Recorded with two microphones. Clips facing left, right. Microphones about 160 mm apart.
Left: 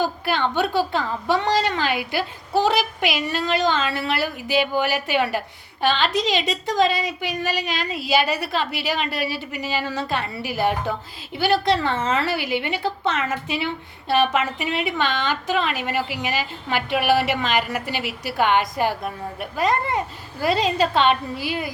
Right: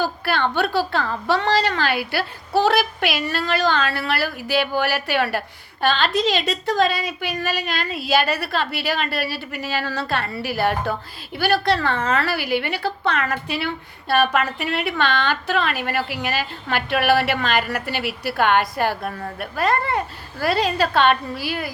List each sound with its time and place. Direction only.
0.0 s a woman's voice: 15° left (ahead or behind)